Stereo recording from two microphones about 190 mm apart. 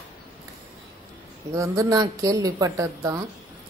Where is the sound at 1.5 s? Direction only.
15° right (ahead or behind).